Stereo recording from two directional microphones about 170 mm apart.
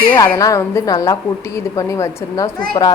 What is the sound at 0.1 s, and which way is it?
A woman's voice, 15° left (ahead or behind).